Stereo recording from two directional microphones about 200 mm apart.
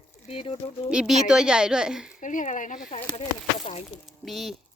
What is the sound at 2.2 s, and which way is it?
Speech, 40° left (ahead or behind).